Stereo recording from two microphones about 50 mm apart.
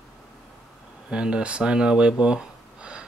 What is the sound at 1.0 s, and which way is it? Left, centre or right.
Speech, centre.